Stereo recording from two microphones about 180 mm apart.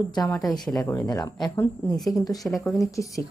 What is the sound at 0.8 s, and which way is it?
Speech, 20° left (ahead or behind).